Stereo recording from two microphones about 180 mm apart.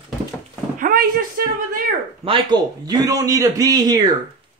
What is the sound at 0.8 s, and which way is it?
Speech, 55° right (ahead or behind).